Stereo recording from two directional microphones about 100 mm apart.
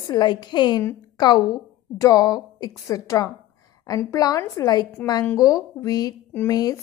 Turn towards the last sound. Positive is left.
turn(degrees=40)  # may be behind; listen again after turning